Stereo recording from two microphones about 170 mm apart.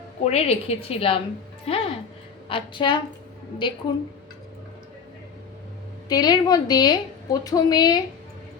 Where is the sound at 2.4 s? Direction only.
30° left (ahead or behind).